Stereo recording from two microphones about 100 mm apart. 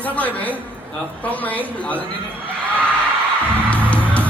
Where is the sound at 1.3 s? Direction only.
15° left (ahead or behind).